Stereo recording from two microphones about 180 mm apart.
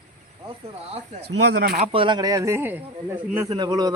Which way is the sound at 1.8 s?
30° right (ahead or behind).